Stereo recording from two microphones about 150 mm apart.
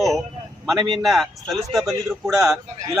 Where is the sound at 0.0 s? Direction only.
Centre (ahead or behind).